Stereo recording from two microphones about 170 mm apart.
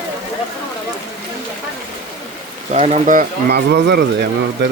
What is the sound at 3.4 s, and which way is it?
Speech, 80° right.